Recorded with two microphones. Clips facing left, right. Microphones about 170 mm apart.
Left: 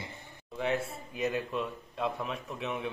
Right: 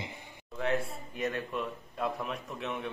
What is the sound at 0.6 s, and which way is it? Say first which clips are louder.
A man's voice: even; centre (ahead or behind).